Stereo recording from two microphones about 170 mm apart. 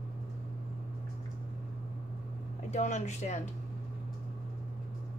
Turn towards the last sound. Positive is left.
turn(degrees=45)  # may be behind; listen again after turning